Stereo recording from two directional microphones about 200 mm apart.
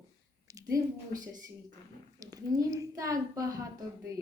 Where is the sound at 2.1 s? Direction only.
20° right (ahead or behind).